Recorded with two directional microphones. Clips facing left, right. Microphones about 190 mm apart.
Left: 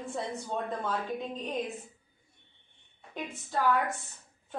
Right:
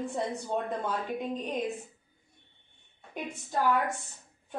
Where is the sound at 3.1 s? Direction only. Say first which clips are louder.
Right 1 dB; 15° right (ahead or behind).